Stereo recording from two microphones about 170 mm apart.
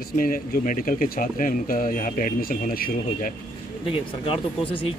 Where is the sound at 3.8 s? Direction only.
30° left (ahead or behind).